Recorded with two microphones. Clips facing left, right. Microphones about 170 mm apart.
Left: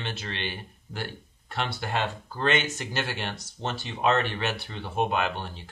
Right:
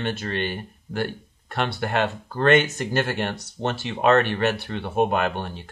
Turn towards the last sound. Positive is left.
turn(degrees=-55)  # may be behind; listen again after turning